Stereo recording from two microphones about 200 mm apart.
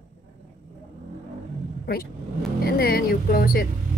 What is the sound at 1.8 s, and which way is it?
A woman's voice, 50° left (ahead or behind).